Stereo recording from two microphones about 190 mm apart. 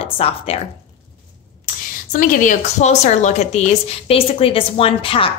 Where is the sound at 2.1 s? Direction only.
45° left (ahead or behind).